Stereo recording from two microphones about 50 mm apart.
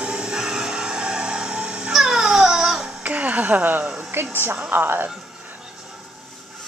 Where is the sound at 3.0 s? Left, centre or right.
Right.